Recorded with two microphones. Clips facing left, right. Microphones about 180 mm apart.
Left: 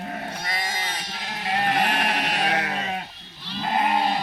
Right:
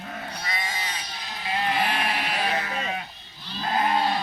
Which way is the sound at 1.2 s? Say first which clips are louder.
Left 3 dB; 80° left.